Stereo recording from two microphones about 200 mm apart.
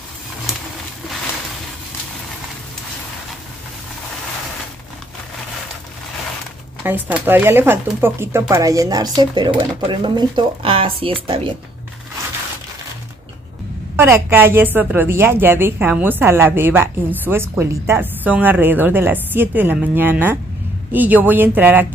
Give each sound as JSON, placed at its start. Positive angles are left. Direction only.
{"t": 6.8, "sound": "a woman's voice", "side_deg": -10}
{"t": 13.9, "sound": "a woman's voice", "side_deg": -10}